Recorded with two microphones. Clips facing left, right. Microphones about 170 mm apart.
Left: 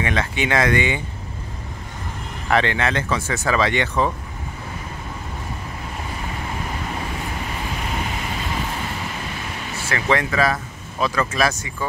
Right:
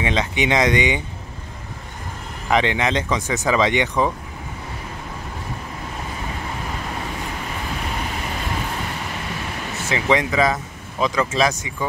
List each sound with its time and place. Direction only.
0.0 s speech: 20° right (ahead or behind)
2.4 s speech: 15° right (ahead or behind)
9.8 s speech: 15° right (ahead or behind)